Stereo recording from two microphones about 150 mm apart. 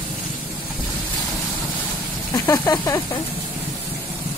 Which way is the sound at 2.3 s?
20° left (ahead or behind).